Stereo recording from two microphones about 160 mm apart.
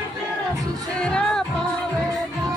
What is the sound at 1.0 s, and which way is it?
Music, 5° left (ahead or behind).